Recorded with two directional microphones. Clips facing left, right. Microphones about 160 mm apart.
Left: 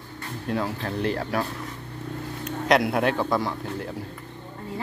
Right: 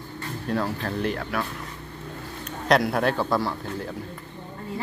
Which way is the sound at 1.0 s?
30° left (ahead or behind).